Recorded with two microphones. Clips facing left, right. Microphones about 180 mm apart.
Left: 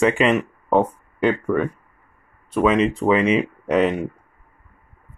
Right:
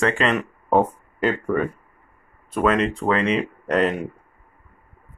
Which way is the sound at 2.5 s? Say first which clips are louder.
Left 2 dB; centre (ahead or behind).